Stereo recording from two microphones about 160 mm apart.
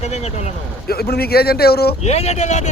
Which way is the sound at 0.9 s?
75° left (ahead or behind).